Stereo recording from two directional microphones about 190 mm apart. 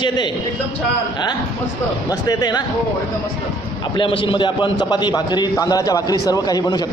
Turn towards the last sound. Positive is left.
turn(degrees=20)  # may be behind; listen again after turning